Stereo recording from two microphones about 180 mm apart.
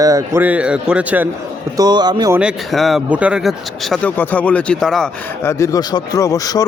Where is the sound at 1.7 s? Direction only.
20° right (ahead or behind).